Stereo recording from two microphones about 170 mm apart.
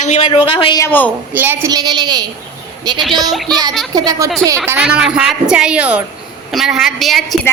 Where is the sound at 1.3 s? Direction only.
10° right (ahead or behind).